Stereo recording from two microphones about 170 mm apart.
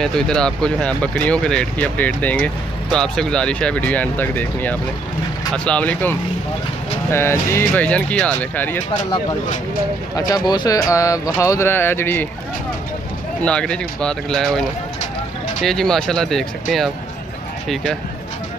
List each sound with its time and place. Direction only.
0.0 s speech: 5° left (ahead or behind)
10.1 s speech: 25° left (ahead or behind)
13.4 s speech: 5° left (ahead or behind)